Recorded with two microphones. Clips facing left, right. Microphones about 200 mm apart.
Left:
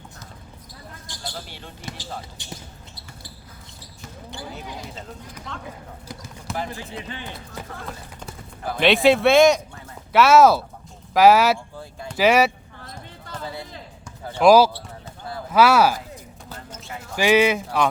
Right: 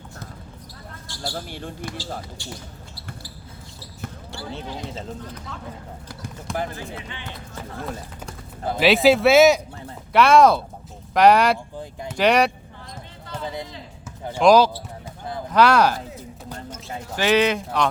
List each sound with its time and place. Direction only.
1.1 s a sound: 15° left (ahead or behind)
1.5 s speech: 50° right (ahead or behind)
1.8 s speech: 20° left (ahead or behind)
5.5 s speech: 5° right (ahead or behind)
8.8 s speech: centre (ahead or behind)
13.4 s music: 20° right (ahead or behind)
14.4 s speech: 5° left (ahead or behind)
17.2 s speech: 10° left (ahead or behind)